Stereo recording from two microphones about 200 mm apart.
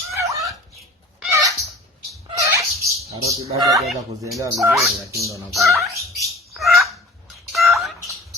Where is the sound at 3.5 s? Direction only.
15° right (ahead or behind).